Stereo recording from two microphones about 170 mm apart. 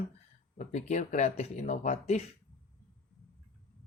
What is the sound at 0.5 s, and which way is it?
Speech, 45° left (ahead or behind).